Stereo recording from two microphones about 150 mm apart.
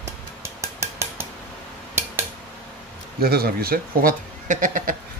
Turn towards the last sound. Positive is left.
turn(degrees=-60)  # may be behind; listen again after turning